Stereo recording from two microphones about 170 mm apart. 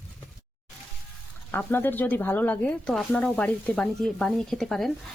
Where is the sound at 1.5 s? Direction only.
10° left (ahead or behind).